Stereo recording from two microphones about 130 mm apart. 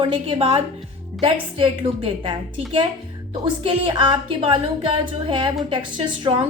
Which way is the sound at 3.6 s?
40° right (ahead or behind).